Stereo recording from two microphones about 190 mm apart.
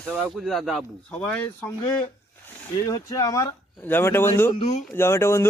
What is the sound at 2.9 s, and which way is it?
Speech, 20° left (ahead or behind).